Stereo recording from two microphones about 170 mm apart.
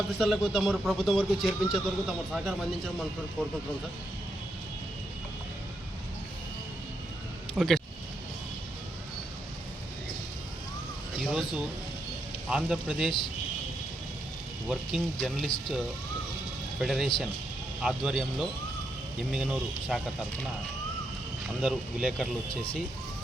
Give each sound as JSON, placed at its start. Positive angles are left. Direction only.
{"t": 0.2, "sound": "speech", "side_deg": 0}
{"t": 7.5, "sound": "speech", "side_deg": 0}
{"t": 11.2, "sound": "speech", "side_deg": -5}
{"t": 14.7, "sound": "speech", "side_deg": 0}
{"t": 16.8, "sound": "speech", "side_deg": 0}
{"t": 21.4, "sound": "speech", "side_deg": -5}